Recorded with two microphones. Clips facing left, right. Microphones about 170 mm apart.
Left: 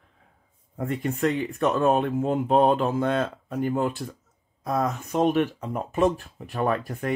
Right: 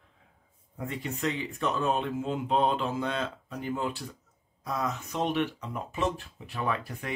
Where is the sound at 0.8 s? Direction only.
50° left (ahead or behind).